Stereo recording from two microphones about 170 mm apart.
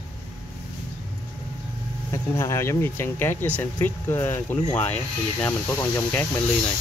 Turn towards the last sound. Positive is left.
turn(degrees=10)  # may be behind; listen again after turning